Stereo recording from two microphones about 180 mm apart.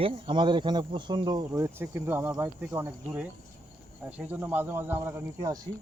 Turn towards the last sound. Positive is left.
turn(degrees=-15)  # may be behind; listen again after turning